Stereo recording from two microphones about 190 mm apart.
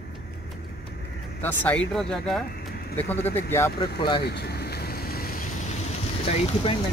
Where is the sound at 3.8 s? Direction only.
25° left (ahead or behind).